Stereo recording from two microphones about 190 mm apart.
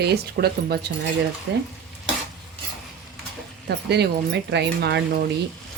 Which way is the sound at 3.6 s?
65° right (ahead or behind).